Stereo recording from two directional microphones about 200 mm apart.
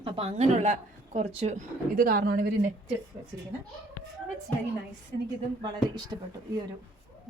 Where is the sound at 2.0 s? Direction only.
50° right (ahead or behind).